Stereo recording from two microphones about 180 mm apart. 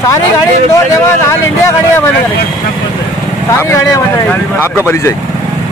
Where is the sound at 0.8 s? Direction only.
15° left (ahead or behind).